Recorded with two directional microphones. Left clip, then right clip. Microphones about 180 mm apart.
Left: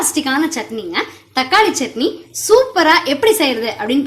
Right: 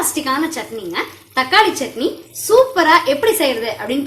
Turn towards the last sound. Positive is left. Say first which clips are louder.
# left 2 dB
turn(degrees=50)  # may be behind; listen again after turning